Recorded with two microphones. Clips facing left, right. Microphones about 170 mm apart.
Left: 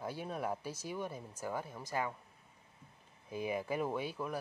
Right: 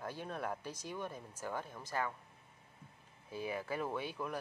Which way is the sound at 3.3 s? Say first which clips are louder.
Left 3 dB; 15° left (ahead or behind).